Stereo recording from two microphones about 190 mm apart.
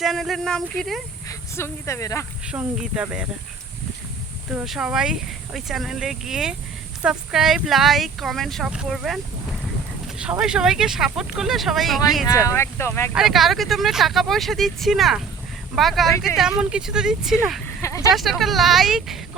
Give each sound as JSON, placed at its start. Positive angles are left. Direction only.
{"t": 0.0, "sound": "speech", "side_deg": 0}
{"t": 1.3, "sound": "speech", "side_deg": 15}
{"t": 2.5, "sound": "speech", "side_deg": -5}
{"t": 4.5, "sound": "speech", "side_deg": 0}
{"t": 12.5, "sound": "speech", "side_deg": 15}
{"t": 13.1, "sound": "speech", "side_deg": 0}
{"t": 17.8, "sound": "vehicle", "side_deg": 15}
{"t": 18.1, "sound": "speech", "side_deg": 0}